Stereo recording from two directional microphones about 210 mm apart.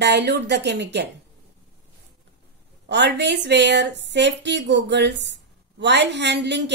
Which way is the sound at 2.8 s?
55° right (ahead or behind).